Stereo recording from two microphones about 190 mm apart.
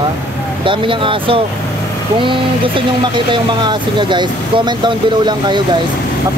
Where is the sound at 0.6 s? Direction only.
25° right (ahead or behind).